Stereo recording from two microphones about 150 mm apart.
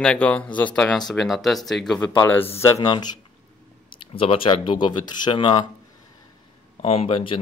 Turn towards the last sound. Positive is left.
turn(degrees=35)  # may be behind; listen again after turning